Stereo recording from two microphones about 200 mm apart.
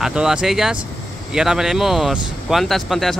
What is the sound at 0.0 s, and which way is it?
Speech, 5° right (ahead or behind).